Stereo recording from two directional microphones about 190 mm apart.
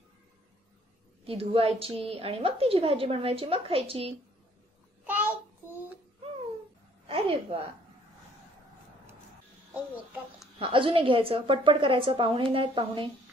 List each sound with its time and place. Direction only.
1.2 s a woman's voice: 30° right (ahead or behind)
5.0 s child singing: 10° right (ahead or behind)
7.1 s a woman's voice: 30° right (ahead or behind)
9.8 s a child's voice: 5° right (ahead or behind)
10.6 s a woman's voice: 30° right (ahead or behind)